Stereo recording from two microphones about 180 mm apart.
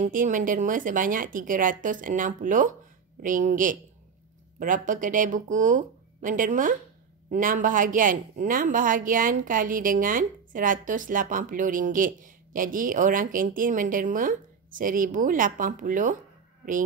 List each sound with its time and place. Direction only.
0.0 s speech: 45° right (ahead or behind)